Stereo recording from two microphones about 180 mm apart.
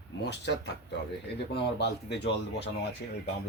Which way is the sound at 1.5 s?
70° left (ahead or behind).